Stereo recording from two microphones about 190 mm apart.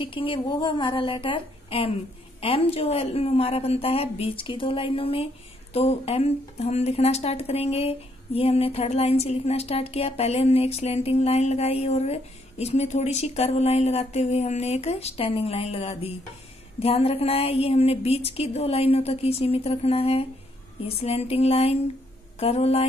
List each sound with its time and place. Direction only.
0.0 s a woman's voice: 25° left (ahead or behind)